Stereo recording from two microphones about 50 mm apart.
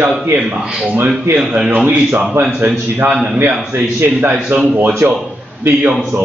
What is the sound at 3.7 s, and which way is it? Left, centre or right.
Speech, right.